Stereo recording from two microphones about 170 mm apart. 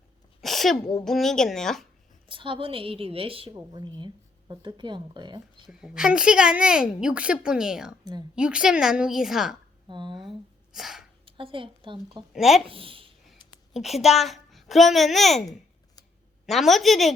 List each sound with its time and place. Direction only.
0.4 s sneeze: centre (ahead or behind)
1.0 s speech: centre (ahead or behind)
2.2 s a woman's voice: 30° right (ahead or behind)
5.6 s speech: 5° right (ahead or behind)
9.9 s speech: 30° right (ahead or behind)
10.8 s speech: centre (ahead or behind)
11.3 s a woman's voice: 30° right (ahead or behind)
12.3 s speech: centre (ahead or behind)
12.6 s speech: 30° right (ahead or behind)
13.7 s speech: centre (ahead or behind)